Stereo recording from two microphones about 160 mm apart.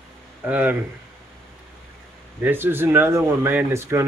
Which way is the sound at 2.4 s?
10° right (ahead or behind).